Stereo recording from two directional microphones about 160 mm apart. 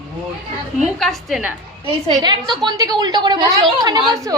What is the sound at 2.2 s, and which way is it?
Speech, 25° right (ahead or behind).